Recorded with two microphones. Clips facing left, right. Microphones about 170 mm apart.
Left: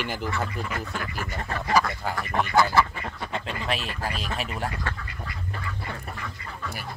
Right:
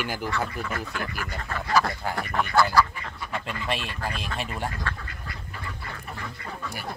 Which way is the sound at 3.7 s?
Centre (ahead or behind).